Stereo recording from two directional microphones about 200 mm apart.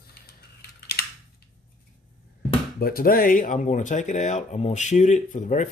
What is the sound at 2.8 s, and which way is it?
Speech, 45° left (ahead or behind).